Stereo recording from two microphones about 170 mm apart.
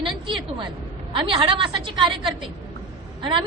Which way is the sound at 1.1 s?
30° right (ahead or behind).